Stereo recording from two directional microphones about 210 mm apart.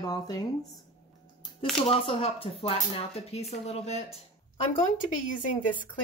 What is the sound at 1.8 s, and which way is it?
Speech, 30° left (ahead or behind).